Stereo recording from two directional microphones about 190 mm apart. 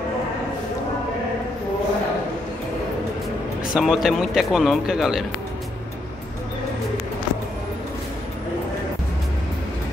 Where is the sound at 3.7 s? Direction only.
Centre (ahead or behind).